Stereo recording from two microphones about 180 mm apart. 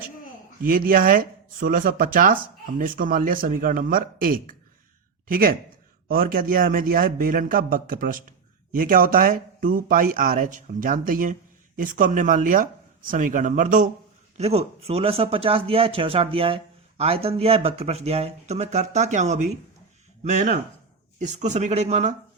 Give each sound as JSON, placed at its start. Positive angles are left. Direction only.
{"t": 0.6, "sound": "speech", "side_deg": -50}
{"t": 14.3, "sound": "speech", "side_deg": -35}